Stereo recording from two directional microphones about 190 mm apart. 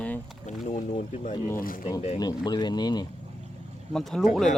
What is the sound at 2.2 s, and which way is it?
Speech, 20° left (ahead or behind).